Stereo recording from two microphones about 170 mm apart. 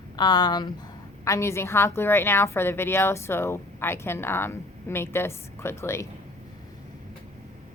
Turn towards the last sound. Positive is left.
turn(degrees=15)  # may be behind; listen again after turning